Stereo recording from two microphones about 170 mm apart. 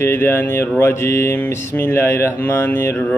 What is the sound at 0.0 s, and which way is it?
Mantra, 15° left (ahead or behind).